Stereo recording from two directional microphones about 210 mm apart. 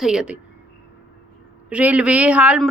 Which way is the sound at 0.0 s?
5° right (ahead or behind).